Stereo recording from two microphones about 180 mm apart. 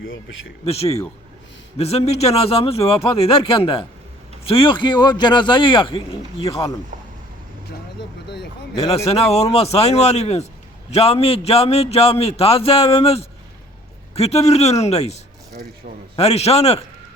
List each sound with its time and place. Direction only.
0.6 s a man's voice: 35° left (ahead or behind)
9.0 s speech: 35° left (ahead or behind)